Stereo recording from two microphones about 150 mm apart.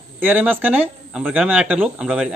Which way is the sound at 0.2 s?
10° right (ahead or behind).